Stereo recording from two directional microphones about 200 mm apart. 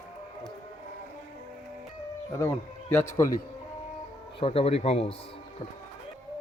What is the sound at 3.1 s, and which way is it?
Speech, 15° left (ahead or behind).